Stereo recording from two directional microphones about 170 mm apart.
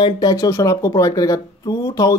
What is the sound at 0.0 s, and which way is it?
Speech, 25° left (ahead or behind).